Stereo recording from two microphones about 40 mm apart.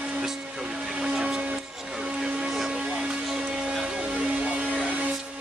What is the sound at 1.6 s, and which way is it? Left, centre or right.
Music, centre.